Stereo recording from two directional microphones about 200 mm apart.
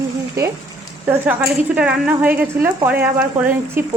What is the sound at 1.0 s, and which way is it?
A woman's voice, 10° right (ahead or behind).